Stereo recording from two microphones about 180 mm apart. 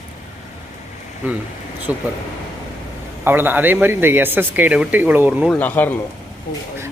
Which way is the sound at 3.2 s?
10° right (ahead or behind).